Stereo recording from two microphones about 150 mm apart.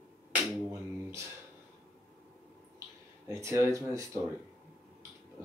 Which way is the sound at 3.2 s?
20° right (ahead or behind).